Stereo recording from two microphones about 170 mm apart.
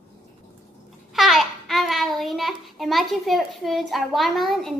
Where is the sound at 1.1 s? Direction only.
Centre (ahead or behind).